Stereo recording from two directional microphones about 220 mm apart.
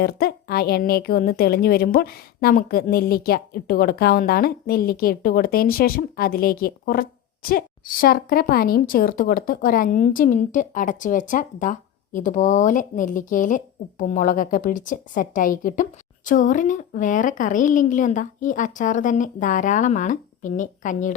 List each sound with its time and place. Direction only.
0.0 s a woman's voice: 45° left (ahead or behind)